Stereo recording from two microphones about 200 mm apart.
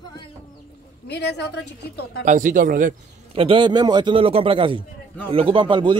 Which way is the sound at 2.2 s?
40° right (ahead or behind).